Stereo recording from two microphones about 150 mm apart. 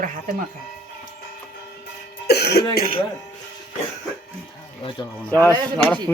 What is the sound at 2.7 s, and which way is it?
Speech, 90° left.